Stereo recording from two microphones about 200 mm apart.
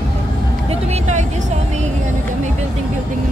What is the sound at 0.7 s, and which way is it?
Speech, 35° right (ahead or behind).